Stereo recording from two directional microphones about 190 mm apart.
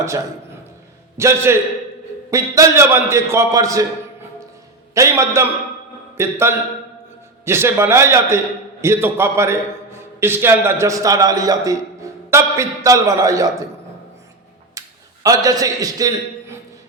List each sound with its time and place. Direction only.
1.1 s a man's voice: 15° right (ahead or behind)
4.9 s a man's voice: 15° right (ahead or behind)
14.8 s a man's voice: 15° right (ahead or behind)